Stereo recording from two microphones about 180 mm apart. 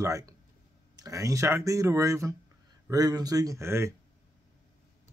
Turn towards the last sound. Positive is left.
turn(degrees=-15)  # may be behind; listen again after turning